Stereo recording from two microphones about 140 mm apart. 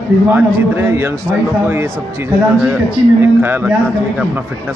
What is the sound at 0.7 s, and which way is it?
A man's voice, 15° right (ahead or behind).